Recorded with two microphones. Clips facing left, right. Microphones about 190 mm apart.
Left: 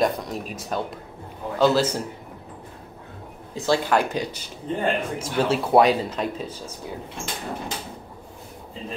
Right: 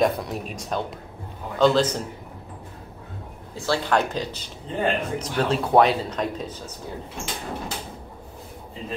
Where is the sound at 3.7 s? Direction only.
10° left (ahead or behind).